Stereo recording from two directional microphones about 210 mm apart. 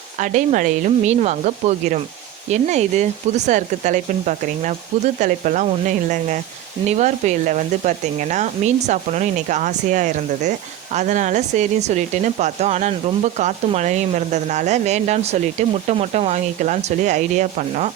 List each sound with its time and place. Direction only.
0.2 s speech: 35° right (ahead or behind)